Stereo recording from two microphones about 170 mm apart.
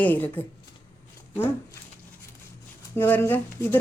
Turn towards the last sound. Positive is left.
turn(degrees=10)  # may be behind; listen again after turning